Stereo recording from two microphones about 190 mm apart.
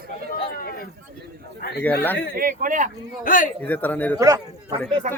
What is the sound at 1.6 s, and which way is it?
Speech, 45° left (ahead or behind).